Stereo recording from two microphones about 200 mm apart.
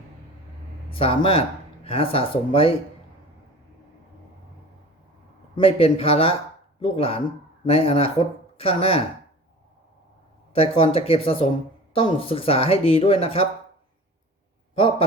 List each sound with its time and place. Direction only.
0.9 s speech: 25° left (ahead or behind)
5.5 s speech: 30° left (ahead or behind)
10.5 s speech: 30° left (ahead or behind)
14.8 s speech: 25° left (ahead or behind)